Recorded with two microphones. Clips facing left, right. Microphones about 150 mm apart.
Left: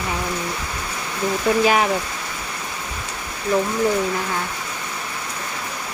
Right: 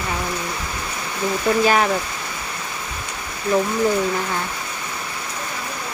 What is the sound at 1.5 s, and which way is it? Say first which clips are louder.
Speech: even; 5° left (ahead or behind).